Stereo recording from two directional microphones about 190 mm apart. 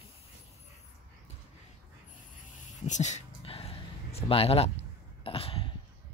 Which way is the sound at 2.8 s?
40° left (ahead or behind).